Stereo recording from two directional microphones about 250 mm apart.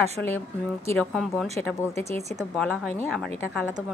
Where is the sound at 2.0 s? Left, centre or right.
Right.